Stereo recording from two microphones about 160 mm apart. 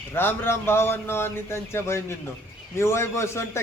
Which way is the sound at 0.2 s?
15° left (ahead or behind).